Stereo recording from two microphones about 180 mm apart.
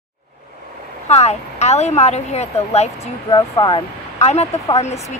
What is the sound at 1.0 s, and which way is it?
Speech, 35° left (ahead or behind).